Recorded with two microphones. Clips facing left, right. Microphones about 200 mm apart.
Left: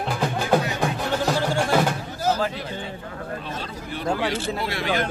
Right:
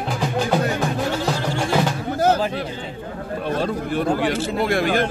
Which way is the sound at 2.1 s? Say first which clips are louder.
Right 6 dB; 60° right (ahead or behind).